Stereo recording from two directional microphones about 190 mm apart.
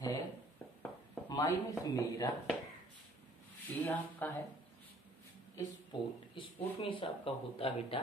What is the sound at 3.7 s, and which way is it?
Speech, 10° left (ahead or behind).